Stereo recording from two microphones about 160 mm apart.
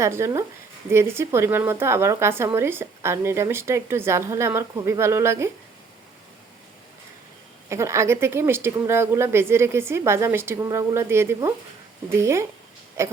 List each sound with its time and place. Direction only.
0.0 s a woman's voice: 20° right (ahead or behind)
7.7 s a woman's voice: 20° right (ahead or behind)